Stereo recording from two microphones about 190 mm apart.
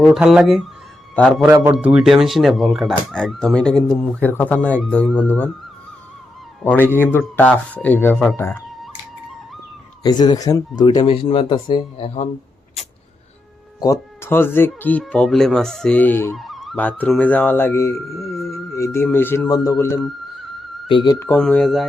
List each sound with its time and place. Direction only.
0.0 s a man's voice: 5° right (ahead or behind)
6.7 s speech: 10° left (ahead or behind)
10.0 s speech: 20° left (ahead or behind)
13.8 s speech: 15° left (ahead or behind)
16.4 s speech: centre (ahead or behind)
18.2 s a sound: centre (ahead or behind)
18.7 s speech: 15° left (ahead or behind)
21.3 s a man's voice: 5° left (ahead or behind)